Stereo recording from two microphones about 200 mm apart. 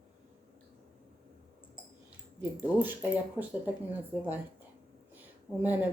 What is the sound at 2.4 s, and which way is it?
Speech, 5° right (ahead or behind).